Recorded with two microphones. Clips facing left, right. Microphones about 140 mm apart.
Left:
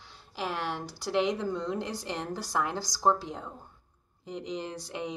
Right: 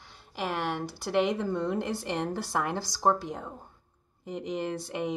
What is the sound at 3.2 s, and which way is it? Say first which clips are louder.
Speech: right 2 dB; 50° right (ahead or behind).